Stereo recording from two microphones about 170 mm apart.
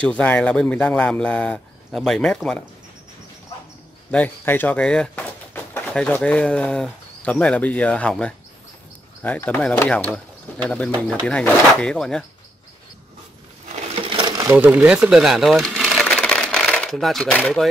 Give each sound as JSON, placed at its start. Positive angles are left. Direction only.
{"t": 0.0, "sound": "speech", "side_deg": 10}
{"t": 4.1, "sound": "speech", "side_deg": 10}
{"t": 13.7, "sound": "crumpling", "side_deg": -35}
{"t": 14.5, "sound": "speech", "side_deg": -10}
{"t": 15.8, "sound": "a sound", "side_deg": 5}